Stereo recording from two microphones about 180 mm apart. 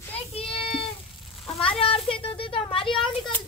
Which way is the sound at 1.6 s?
30° left (ahead or behind).